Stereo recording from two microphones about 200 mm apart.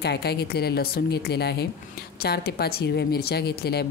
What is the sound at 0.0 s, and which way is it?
A woman's voice, 55° left (ahead or behind).